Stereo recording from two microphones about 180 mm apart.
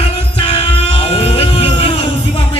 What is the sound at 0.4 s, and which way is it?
Music, 30° left (ahead or behind).